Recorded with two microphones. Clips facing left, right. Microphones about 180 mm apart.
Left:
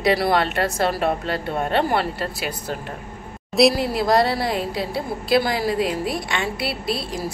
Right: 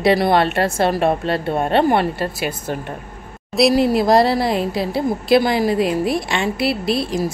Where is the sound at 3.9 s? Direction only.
25° right (ahead or behind).